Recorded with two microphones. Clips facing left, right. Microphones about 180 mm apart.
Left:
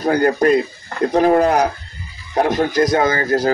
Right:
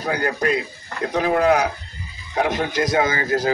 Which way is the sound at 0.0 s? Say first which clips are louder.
Left 7 dB; 45° left (ahead or behind).